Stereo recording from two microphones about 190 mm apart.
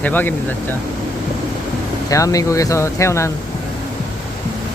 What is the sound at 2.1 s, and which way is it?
Speech, 20° left (ahead or behind).